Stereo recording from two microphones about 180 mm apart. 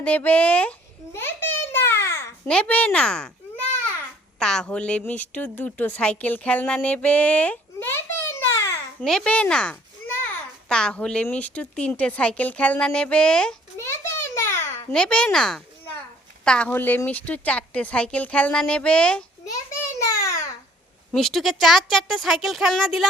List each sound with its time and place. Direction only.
0.0 s a woman's voice: 10° left (ahead or behind)
1.1 s babbling: 10° left (ahead or behind)
4.4 s a woman's voice: 5° left (ahead or behind)
9.0 s a child's voice: 5° left (ahead or behind)
20.1 s babbling: 15° left (ahead or behind)
21.1 s speech: centre (ahead or behind)